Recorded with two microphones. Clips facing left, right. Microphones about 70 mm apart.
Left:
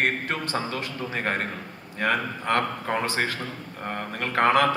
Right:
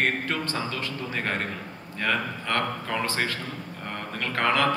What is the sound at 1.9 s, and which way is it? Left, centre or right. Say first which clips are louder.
Speech: left 2 dB; left.